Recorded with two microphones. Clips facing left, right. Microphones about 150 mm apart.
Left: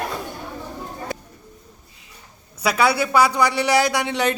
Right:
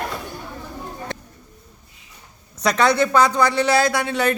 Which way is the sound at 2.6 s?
5° left (ahead or behind).